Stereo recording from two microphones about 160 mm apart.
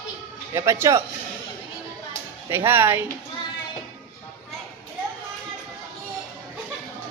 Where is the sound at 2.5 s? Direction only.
15° right (ahead or behind).